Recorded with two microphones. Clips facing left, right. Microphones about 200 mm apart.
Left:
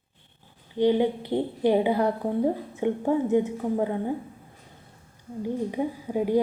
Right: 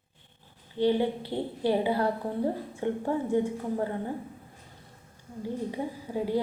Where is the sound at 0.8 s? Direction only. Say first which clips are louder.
Left 3 dB; 15° left (ahead or behind).